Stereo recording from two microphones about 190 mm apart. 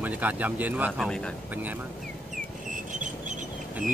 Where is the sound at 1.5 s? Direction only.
10° right (ahead or behind).